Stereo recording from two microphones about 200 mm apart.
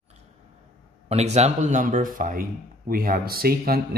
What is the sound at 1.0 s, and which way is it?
Speech, 35° right (ahead or behind).